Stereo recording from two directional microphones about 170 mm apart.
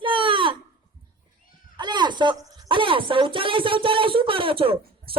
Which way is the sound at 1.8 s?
25° right (ahead or behind).